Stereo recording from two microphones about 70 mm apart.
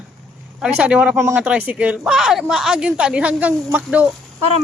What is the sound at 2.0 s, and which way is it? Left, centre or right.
Speech, centre.